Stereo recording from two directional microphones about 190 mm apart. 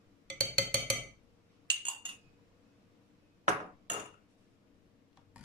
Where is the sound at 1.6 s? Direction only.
25° right (ahead or behind).